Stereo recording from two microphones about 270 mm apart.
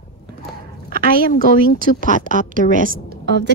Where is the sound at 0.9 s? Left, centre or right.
Right.